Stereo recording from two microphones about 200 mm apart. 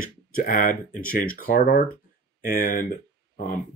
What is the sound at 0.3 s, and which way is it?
Speech, 40° left (ahead or behind).